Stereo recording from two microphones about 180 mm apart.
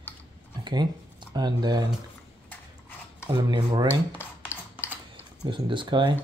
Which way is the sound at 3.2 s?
25° right (ahead or behind).